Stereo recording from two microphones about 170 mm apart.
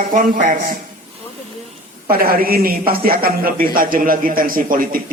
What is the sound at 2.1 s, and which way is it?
A man's voice, 60° right (ahead or behind).